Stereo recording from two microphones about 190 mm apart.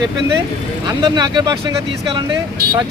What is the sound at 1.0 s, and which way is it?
Speech, 20° right (ahead or behind).